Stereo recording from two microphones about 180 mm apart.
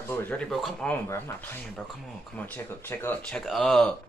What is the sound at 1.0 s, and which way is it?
Speech, 10° left (ahead or behind).